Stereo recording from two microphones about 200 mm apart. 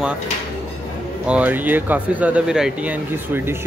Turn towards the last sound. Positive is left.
turn(degrees=-10)  # may be behind; listen again after turning